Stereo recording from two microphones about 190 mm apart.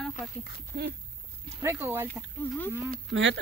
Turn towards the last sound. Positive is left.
turn(degrees=-75)  # may be behind; listen again after turning